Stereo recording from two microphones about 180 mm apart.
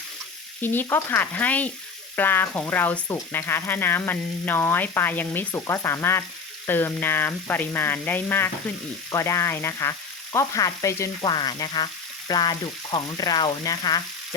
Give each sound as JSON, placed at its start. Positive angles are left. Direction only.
{"t": 0.6, "sound": "speech", "side_deg": 10}
{"t": 10.3, "sound": "frying", "side_deg": 20}